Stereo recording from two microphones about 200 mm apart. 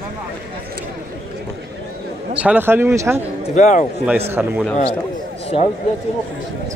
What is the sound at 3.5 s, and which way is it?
Speech, 35° left (ahead or behind).